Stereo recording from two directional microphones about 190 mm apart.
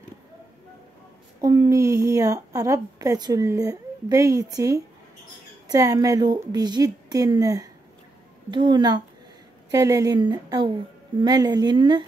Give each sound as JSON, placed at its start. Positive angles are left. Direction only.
{"t": 1.4, "sound": "a woman's voice", "side_deg": -20}